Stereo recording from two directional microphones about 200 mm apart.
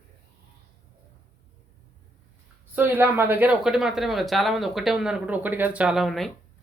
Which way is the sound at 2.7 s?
10° right (ahead or behind).